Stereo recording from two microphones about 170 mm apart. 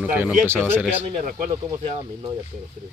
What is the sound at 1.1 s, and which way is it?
Speech, 50° right (ahead or behind).